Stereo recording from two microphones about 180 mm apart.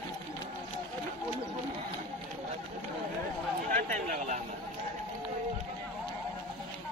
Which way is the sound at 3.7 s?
45° right (ahead or behind).